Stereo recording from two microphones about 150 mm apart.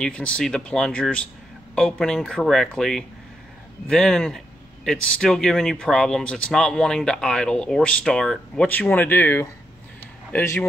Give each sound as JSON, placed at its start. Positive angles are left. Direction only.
{"t": 0.0, "sound": "speech", "side_deg": 10}